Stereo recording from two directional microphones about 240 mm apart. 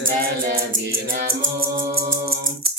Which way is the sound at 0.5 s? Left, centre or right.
Right.